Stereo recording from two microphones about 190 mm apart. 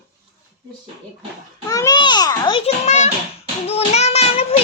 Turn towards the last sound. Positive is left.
turn(degrees=35)  # may be behind; listen again after turning